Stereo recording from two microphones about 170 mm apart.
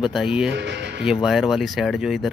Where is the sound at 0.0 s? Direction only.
Centre (ahead or behind).